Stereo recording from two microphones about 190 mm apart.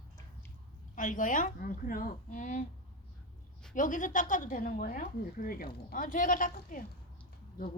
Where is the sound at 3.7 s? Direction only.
45° left (ahead or behind).